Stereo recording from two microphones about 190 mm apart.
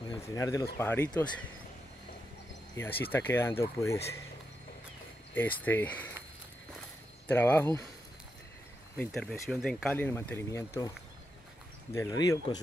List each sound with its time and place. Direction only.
0.1 s speech: 20° left (ahead or behind)
3.1 s speech: 10° left (ahead or behind)
5.3 s speech: 10° left (ahead or behind)
7.2 s speech: 10° left (ahead or behind)
8.9 s speech: 5° left (ahead or behind)
11.9 s speech: 15° left (ahead or behind)